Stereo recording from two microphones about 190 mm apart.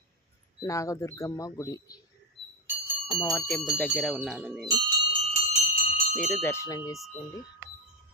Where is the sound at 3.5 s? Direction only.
Centre (ahead or behind).